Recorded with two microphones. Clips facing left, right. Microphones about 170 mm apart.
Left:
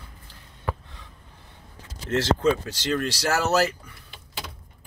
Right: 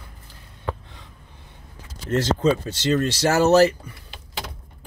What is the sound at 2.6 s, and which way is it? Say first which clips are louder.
Speech: right 5 dB; 25° right (ahead or behind).